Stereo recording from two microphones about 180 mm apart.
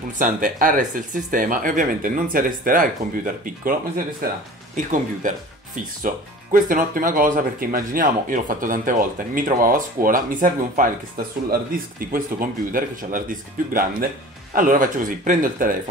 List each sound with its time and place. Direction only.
0.2 s speech: 50° right (ahead or behind)